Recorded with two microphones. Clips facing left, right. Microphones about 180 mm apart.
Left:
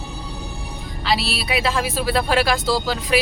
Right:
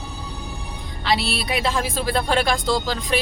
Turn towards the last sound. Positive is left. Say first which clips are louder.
# left 1 dB
turn(degrees=5)  # may be behind; listen again after turning